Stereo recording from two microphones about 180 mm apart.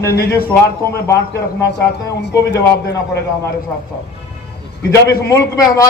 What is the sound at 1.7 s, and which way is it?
Speech, 70° left (ahead or behind).